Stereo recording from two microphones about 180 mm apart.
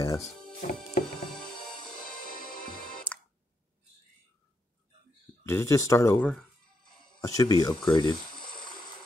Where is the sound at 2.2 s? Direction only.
50° left (ahead or behind).